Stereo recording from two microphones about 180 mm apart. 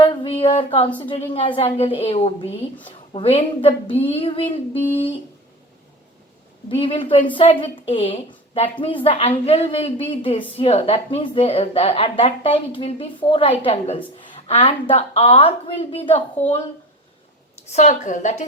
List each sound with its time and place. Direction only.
0.0 s a sound: 30° left (ahead or behind)
0.9 s speech: 25° left (ahead or behind)
6.7 s speech: 30° left (ahead or behind)
17.7 s speech: 40° left (ahead or behind)